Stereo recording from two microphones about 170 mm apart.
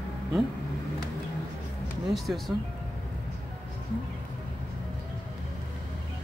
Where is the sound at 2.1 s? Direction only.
Centre (ahead or behind).